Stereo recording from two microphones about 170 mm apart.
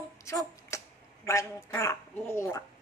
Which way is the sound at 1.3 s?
20° left (ahead or behind).